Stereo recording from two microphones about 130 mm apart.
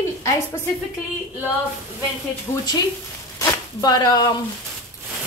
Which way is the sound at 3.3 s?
30° left (ahead or behind).